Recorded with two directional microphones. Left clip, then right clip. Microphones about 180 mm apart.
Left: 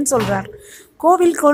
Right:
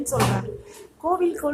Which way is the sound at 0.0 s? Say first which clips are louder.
Left 6 dB; 50° left (ahead or behind).